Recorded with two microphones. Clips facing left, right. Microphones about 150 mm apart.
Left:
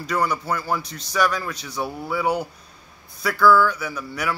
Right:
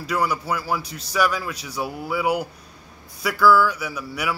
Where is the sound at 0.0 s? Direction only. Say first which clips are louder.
Even; 10° right (ahead or behind).